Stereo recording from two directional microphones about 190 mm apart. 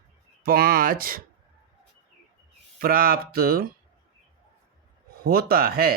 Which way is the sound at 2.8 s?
50° right (ahead or behind).